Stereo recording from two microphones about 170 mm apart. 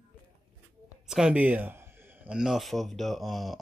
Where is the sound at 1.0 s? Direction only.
5° right (ahead or behind).